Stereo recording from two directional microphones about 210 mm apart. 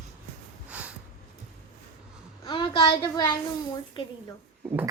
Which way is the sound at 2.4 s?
25° left (ahead or behind).